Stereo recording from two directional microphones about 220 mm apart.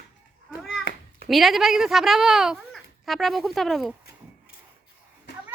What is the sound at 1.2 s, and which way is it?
Speech, centre (ahead or behind).